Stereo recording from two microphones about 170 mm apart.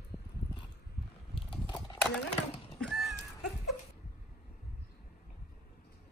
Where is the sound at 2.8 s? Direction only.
Centre (ahead or behind).